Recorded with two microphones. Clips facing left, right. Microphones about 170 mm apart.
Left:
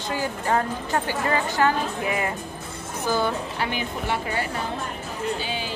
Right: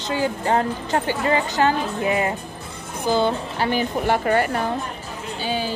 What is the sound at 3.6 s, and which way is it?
Speech, 40° right (ahead or behind).